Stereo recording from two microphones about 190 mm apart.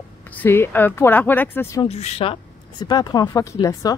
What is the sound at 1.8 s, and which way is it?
Speech, 35° left (ahead or behind).